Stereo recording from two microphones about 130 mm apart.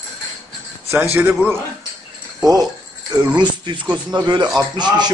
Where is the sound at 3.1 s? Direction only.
30° right (ahead or behind).